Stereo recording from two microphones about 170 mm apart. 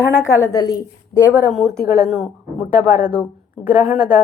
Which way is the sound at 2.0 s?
Centre (ahead or behind).